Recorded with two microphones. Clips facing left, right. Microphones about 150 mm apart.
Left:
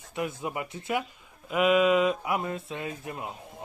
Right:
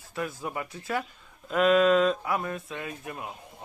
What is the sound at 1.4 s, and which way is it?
Speech, 10° left (ahead or behind).